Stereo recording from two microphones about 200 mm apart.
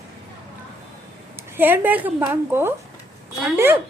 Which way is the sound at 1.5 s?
10° right (ahead or behind).